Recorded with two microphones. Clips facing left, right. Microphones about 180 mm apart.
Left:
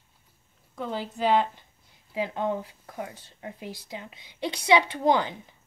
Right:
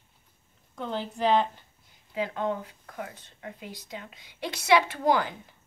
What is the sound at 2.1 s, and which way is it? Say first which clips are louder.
Speech: left 1 dB; 25° left (ahead or behind).